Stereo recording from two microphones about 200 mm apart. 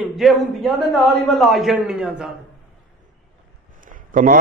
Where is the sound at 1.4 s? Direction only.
Centre (ahead or behind).